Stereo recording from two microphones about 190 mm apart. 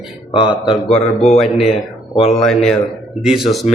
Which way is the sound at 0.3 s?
25° left (ahead or behind).